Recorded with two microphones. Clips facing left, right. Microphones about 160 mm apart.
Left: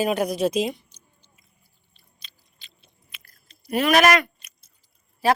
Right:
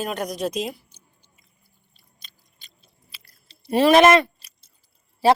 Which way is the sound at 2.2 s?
45° right (ahead or behind).